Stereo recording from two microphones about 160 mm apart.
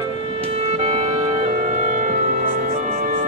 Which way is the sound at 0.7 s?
40° right (ahead or behind).